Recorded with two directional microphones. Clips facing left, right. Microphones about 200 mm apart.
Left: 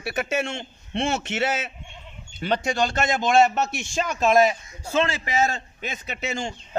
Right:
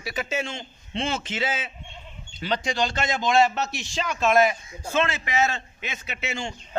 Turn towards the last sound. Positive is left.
turn(degrees=40)  # may be behind; listen again after turning